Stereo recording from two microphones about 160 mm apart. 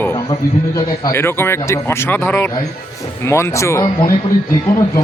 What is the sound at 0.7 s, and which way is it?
A man's voice, 25° left (ahead or behind).